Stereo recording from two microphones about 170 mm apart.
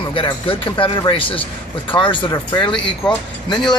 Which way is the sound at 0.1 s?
30° left (ahead or behind).